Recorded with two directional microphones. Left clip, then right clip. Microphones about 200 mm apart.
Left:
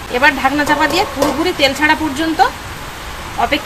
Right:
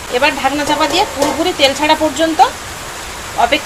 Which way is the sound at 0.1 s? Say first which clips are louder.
Left 1 dB; 5° left (ahead or behind).